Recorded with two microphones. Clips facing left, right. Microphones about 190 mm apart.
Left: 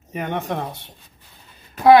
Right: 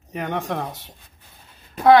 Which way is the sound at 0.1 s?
Centre (ahead or behind).